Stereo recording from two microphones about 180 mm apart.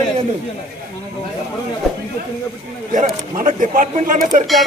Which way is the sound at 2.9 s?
45° right (ahead or behind).